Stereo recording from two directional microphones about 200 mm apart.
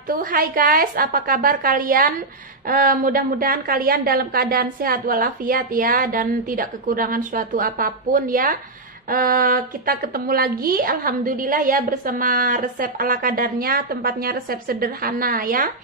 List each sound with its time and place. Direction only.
0.1 s a woman's voice: 45° right (ahead or behind)